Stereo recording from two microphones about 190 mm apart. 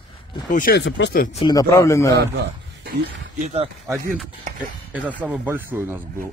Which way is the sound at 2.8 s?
55° right (ahead or behind).